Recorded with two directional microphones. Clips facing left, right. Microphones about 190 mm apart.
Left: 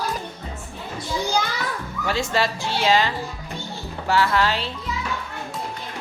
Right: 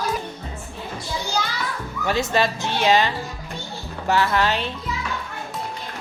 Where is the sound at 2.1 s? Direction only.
20° right (ahead or behind).